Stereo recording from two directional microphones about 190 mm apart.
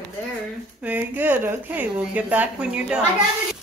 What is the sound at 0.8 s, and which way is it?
Speech, 10° right (ahead or behind).